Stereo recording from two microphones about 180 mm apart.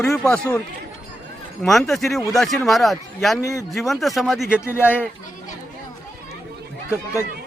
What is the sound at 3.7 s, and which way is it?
Speech, centre (ahead or behind).